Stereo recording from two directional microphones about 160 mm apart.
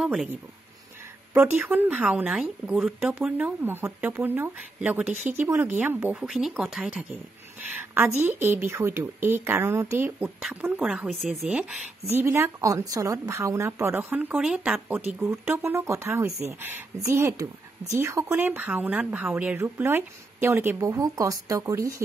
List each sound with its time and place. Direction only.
0.0 s speech: centre (ahead or behind)
1.3 s speech: 10° right (ahead or behind)
12.1 s speech: 15° right (ahead or behind)